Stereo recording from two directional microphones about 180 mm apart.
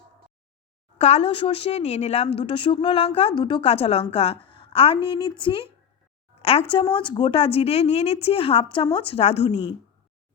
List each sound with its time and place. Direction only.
0.9 s a woman's voice: 35° left (ahead or behind)